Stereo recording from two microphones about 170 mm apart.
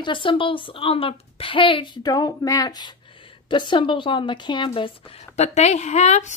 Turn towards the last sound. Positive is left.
turn(degrees=45)  # may be behind; listen again after turning